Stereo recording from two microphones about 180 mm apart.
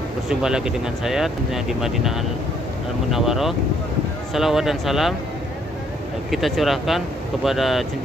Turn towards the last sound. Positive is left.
turn(degrees=0)  # may be behind; listen again after turning